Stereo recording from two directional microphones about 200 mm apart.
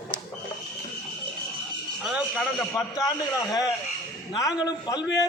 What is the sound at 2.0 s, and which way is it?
A man's voice, centre (ahead or behind).